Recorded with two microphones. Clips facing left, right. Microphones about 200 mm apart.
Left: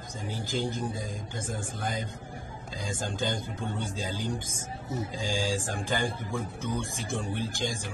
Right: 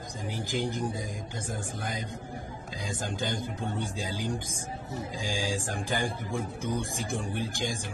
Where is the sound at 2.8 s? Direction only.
15° right (ahead or behind).